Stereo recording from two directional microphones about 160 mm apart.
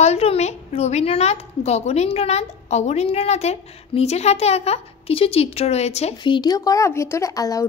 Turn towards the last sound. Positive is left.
turn(degrees=20)  # may be behind; listen again after turning